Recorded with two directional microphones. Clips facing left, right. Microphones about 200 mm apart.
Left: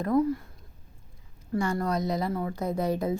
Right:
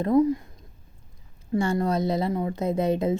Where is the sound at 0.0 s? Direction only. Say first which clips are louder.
Right 4 dB; 20° right (ahead or behind).